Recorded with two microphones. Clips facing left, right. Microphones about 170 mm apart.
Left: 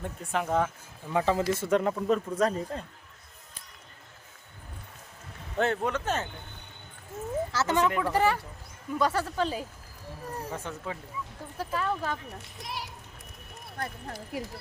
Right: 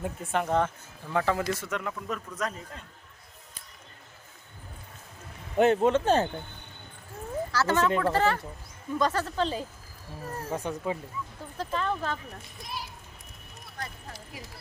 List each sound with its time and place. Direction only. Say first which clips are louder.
0.0 s speech: right 2 dB; centre (ahead or behind); by 2.8 s 30° left (ahead or behind)
5.5 s speech: right 6 dB; 20° right (ahead or behind)
7.5 s speech: right 2 dB; 20° left (ahead or behind)
10.5 s speech: right 10 dB; 15° right (ahead or behind)
11.5 s speech: even; 10° left (ahead or behind)
12.4 s a child's voice: left 1 dB; 75° left (ahead or behind)
13.7 s speech: left 4 dB; 55° left (ahead or behind)